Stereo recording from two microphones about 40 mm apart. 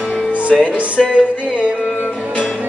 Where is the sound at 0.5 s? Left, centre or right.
Centre.